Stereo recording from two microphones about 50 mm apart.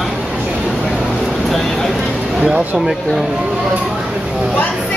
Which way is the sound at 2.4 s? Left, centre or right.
Centre.